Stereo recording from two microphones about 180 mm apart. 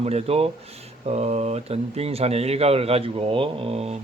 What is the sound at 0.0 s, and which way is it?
Speech, 35° right (ahead or behind).